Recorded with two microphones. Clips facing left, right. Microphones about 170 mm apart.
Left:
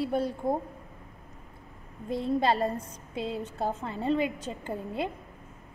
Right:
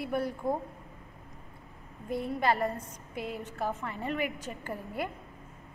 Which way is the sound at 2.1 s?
25° left (ahead or behind).